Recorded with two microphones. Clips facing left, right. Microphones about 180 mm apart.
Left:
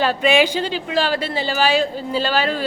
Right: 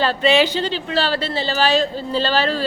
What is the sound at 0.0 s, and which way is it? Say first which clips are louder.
A woman's voice: even; 10° left (ahead or behind).